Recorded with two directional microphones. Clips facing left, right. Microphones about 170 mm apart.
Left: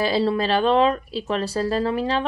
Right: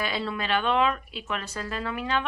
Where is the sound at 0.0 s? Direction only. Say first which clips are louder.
Left 10 dB; 35° left (ahead or behind).